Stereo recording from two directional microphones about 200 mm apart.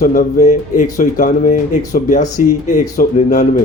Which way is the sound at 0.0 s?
40° left (ahead or behind).